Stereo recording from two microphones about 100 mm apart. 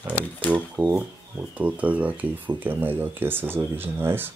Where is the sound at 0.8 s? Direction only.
15° right (ahead or behind).